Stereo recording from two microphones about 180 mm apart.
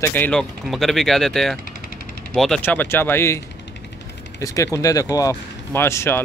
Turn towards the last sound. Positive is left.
turn(degrees=15)  # may be behind; listen again after turning